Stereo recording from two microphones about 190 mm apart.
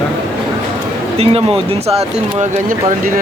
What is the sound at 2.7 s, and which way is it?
Speech, 45° right (ahead or behind).